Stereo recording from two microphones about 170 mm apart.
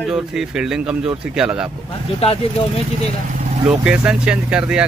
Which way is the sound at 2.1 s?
35° left (ahead or behind).